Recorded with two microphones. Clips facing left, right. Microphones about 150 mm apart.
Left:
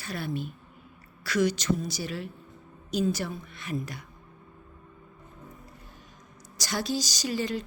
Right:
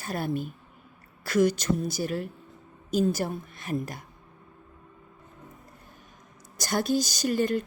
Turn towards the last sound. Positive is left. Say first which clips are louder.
# right 5 dB
turn(degrees=-50)  # may be behind; listen again after turning